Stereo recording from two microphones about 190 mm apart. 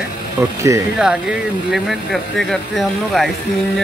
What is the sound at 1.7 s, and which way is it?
Speech, centre (ahead or behind).